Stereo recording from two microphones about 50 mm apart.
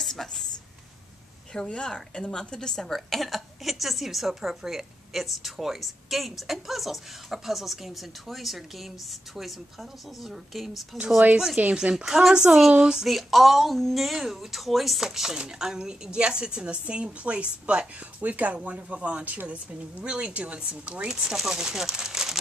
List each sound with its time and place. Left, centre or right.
0.0 s speech: centre
1.5 s a woman's voice: centre
11.7 s a woman's voice: centre
21.1 s speech: centre